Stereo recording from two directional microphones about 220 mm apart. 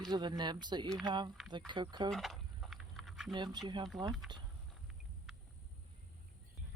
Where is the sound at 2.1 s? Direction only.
Centre (ahead or behind).